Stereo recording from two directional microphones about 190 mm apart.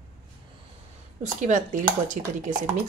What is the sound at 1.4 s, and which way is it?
Speech, 40° right (ahead or behind).